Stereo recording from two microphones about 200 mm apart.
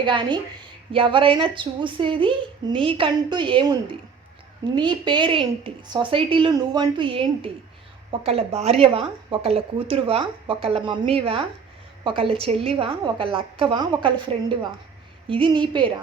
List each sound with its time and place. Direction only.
0.0 s a woman's voice: 25° right (ahead or behind)
15.3 s a woman's voice: 25° right (ahead or behind)